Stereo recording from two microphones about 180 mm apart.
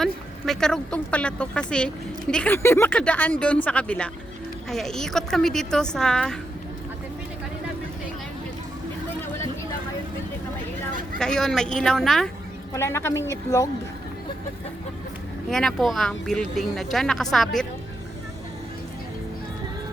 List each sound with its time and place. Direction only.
0.0 s speech: centre (ahead or behind)
11.2 s speech: 5° left (ahead or behind)
12.7 s speech: 15° left (ahead or behind)
15.4 s speech: 5° left (ahead or behind)